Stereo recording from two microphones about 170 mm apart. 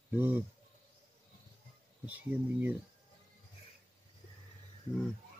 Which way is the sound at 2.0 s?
10° right (ahead or behind).